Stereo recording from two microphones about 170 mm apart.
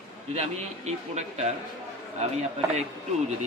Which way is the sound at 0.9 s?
40° right (ahead or behind).